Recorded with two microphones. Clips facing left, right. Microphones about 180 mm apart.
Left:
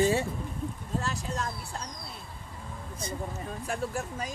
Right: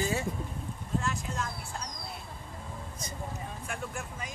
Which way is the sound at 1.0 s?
35° left (ahead or behind).